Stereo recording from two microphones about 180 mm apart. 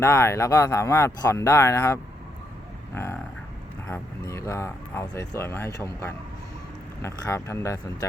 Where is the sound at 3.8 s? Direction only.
15° left (ahead or behind).